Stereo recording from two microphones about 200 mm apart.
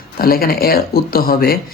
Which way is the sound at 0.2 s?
50° left (ahead or behind).